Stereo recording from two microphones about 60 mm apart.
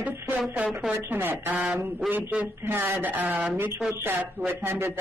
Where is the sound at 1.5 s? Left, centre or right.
Right.